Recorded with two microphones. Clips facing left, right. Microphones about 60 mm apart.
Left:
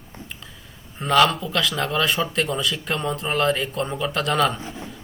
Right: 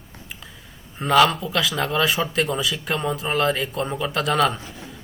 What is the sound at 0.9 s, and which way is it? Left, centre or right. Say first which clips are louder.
Speech: right 1 dB; centre.